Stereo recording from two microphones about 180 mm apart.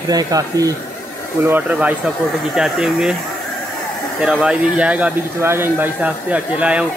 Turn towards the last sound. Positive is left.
turn(degrees=-5)  # may be behind; listen again after turning